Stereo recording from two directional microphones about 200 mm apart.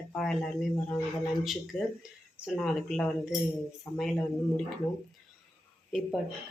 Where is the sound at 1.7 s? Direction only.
10° left (ahead or behind).